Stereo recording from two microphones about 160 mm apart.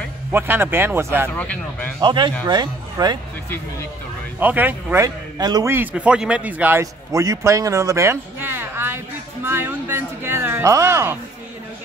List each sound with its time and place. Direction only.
0.3 s speech: 15° right (ahead or behind)
1.3 s speech: 10° left (ahead or behind)
2.0 s speech: 30° right (ahead or behind)
4.4 s a man's voice: 10° right (ahead or behind)